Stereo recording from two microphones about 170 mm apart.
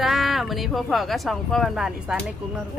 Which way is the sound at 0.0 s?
Centre (ahead or behind).